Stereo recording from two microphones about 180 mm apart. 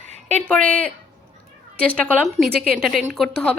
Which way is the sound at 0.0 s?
40° right (ahead or behind).